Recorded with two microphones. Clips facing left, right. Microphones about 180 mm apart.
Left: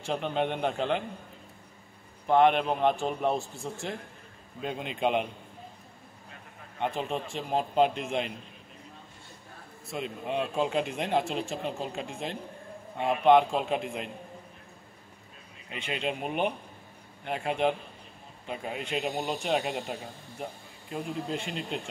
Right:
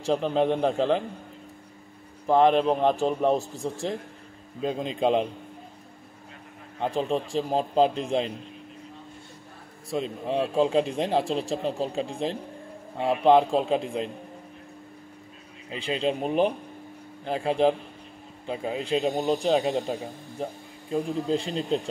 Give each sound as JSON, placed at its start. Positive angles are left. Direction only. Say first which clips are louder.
{"t": 0.0, "sound": "speech", "louder": "right 6 dB", "side_deg": -35}
{"t": 2.2, "sound": "speech", "louder": "right 3 dB", "side_deg": -35}
{"t": 6.8, "sound": "speech", "louder": "right 5 dB", "side_deg": -35}
{"t": 9.8, "sound": "speech", "louder": "right 5 dB", "side_deg": -35}
{"t": 15.7, "sound": "speech", "louder": "right 6 dB", "side_deg": -30}